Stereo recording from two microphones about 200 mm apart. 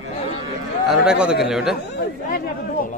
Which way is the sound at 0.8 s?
5° right (ahead or behind).